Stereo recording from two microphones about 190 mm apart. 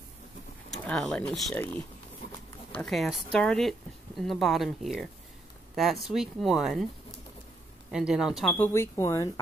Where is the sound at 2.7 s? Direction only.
Centre (ahead or behind).